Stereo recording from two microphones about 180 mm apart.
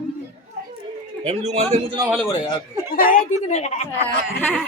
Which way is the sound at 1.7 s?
20° right (ahead or behind).